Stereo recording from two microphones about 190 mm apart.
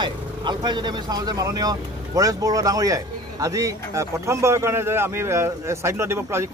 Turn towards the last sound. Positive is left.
turn(degrees=-15)  # may be behind; listen again after turning